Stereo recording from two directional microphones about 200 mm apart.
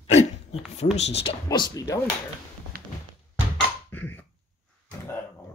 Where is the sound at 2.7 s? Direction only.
45° right (ahead or behind).